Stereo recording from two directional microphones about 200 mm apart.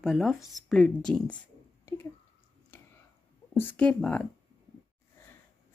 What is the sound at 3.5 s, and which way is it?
Speech, 10° left (ahead or behind).